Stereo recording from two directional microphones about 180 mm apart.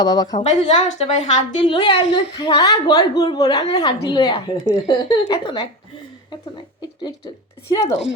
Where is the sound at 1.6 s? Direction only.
25° left (ahead or behind).